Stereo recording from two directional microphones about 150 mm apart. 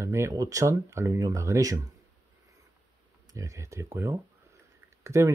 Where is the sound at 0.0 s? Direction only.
20° right (ahead or behind).